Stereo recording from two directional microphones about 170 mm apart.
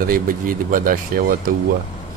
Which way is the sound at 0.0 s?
55° right (ahead or behind).